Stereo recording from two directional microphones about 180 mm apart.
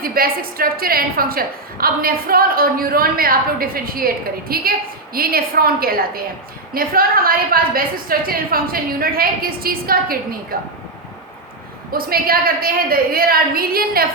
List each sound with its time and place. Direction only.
0.0 s a woman's voice: 55° right (ahead or behind)
11.9 s a woman's voice: 55° right (ahead or behind)